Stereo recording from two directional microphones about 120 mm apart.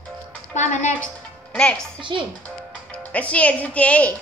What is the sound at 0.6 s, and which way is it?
Speech, 80° left.